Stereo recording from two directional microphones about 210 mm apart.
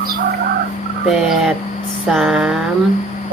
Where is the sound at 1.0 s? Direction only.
Centre (ahead or behind).